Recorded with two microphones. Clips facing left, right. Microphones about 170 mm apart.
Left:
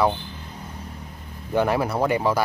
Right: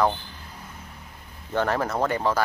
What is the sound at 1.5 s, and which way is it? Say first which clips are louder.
Speech: left 3 dB; 10° left (ahead or behind).